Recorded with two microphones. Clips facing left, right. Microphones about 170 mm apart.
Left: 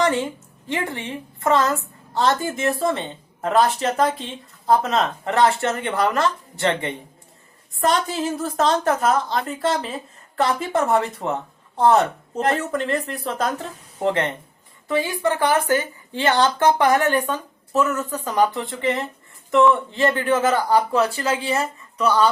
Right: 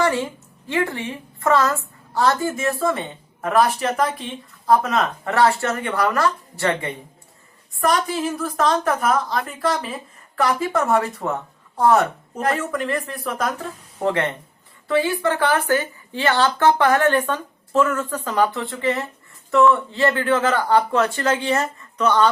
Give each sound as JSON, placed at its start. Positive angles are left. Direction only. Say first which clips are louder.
{"t": 0.0, "sound": "a sound", "louder": "even", "side_deg": 20}
{"t": 0.7, "sound": "speech", "louder": "right 3 dB", "side_deg": 20}
{"t": 14.0, "sound": "a woman's voice", "louder": "even", "side_deg": 15}